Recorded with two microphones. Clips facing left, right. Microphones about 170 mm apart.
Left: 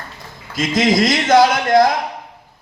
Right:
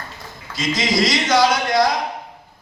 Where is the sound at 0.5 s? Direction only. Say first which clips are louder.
Left 5 dB; 50° left (ahead or behind).